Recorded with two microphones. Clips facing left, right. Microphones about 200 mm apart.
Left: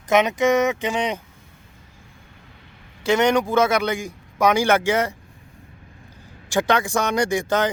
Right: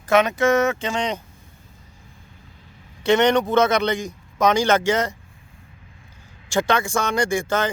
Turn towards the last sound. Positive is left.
turn(degrees=15)  # may be behind; listen again after turning